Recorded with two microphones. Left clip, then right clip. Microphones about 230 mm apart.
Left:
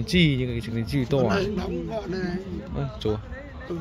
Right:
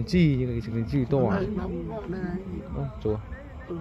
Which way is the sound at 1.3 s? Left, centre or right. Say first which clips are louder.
Left 4 dB; left.